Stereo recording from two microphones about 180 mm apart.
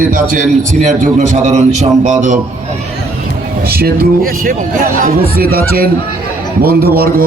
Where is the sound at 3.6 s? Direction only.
60° right (ahead or behind).